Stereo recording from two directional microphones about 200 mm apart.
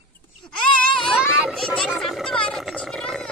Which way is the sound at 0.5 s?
5° left (ahead or behind).